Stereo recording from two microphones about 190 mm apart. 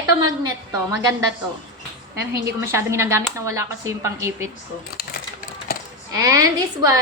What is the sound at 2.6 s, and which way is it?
A woman's voice, 15° right (ahead or behind).